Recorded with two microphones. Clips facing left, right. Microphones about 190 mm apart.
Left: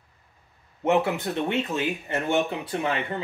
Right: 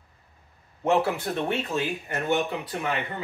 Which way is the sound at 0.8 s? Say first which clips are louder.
Left 1 dB; 20° left (ahead or behind).